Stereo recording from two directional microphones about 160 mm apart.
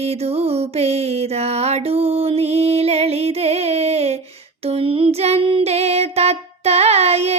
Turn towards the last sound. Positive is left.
turn(degrees=-40)  # may be behind; listen again after turning